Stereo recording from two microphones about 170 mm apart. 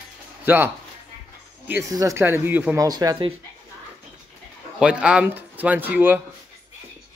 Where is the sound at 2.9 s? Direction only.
25° right (ahead or behind).